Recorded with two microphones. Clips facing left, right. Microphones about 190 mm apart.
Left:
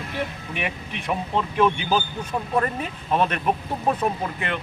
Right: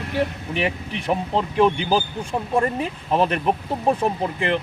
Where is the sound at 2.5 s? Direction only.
30° right (ahead or behind).